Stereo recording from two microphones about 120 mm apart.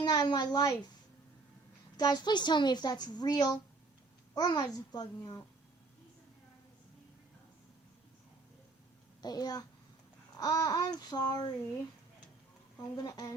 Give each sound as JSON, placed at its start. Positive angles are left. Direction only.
{"t": 0.0, "sound": "speech", "side_deg": 35}
{"t": 2.0, "sound": "a woman's voice", "side_deg": 35}
{"t": 9.2, "sound": "a woman's voice", "side_deg": 35}
{"t": 12.7, "sound": "a woman's voice", "side_deg": 35}